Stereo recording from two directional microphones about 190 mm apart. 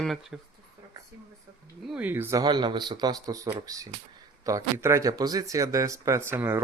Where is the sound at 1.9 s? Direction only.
10° right (ahead or behind).